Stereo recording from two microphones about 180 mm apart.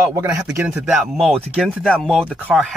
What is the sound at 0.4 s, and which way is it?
Speech, 5° right (ahead or behind).